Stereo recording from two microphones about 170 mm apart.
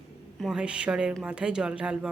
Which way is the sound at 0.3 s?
5° right (ahead or behind).